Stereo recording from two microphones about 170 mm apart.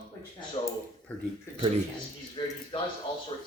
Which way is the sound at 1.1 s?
10° left (ahead or behind).